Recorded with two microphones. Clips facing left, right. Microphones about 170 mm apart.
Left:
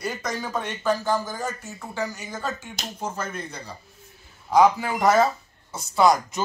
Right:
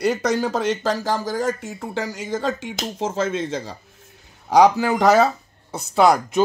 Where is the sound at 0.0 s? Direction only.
75° right (ahead or behind); by 3.7 s 90° right.